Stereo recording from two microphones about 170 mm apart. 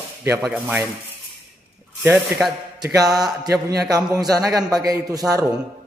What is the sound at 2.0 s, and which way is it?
Speech, centre (ahead or behind).